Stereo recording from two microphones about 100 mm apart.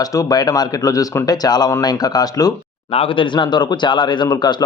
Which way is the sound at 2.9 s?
65° left (ahead or behind).